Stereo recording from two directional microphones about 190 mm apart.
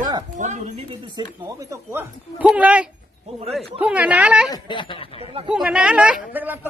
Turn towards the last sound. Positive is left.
turn(degrees=-10)  # may be behind; listen again after turning